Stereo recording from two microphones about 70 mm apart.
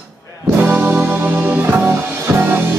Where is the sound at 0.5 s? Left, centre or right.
Right.